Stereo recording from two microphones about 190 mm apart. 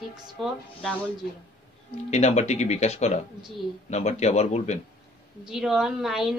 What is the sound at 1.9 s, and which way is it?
Speech, 35° left (ahead or behind).